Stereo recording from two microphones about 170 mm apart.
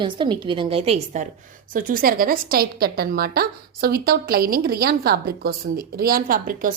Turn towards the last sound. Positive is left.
turn(degrees=-55)  # may be behind; listen again after turning